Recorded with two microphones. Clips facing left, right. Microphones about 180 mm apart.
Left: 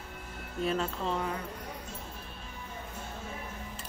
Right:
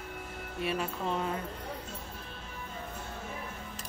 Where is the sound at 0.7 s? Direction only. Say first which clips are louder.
Left 1 dB; 15° right (ahead or behind).